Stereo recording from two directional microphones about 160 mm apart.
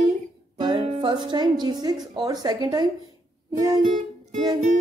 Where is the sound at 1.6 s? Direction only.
25° right (ahead or behind).